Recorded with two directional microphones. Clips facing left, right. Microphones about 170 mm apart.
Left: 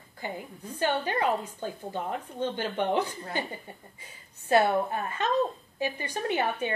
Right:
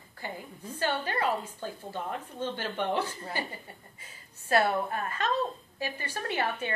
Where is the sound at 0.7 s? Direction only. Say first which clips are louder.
Left 3 dB; 15° left (ahead or behind).